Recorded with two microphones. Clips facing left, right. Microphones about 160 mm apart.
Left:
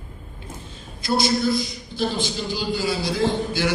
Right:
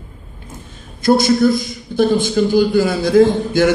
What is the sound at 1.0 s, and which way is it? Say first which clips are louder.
A man's voice: right 9 dB; 50° right (ahead or behind).